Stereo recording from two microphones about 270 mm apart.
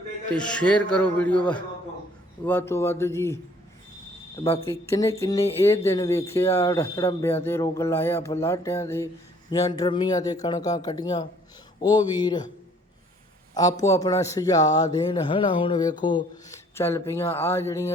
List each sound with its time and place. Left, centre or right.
0.3 s a man's voice: centre
4.4 s speech: left
4.7 s speech: centre
13.5 s speech: centre